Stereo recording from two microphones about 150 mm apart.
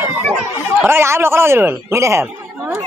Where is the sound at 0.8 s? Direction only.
15° right (ahead or behind).